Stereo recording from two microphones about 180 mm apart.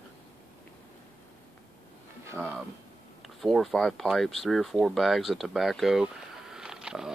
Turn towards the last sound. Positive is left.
turn(degrees=-5)  # may be behind; listen again after turning